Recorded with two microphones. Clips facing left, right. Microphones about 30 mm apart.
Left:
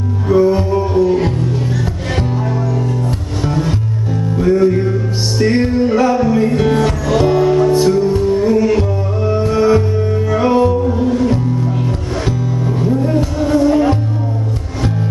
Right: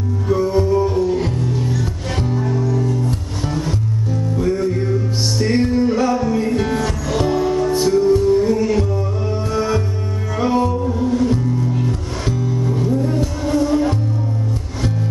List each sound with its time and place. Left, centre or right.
0.3 s music: left
2.3 s music: left